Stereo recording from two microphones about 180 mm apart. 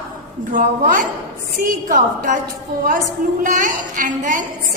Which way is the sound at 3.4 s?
45° right (ahead or behind).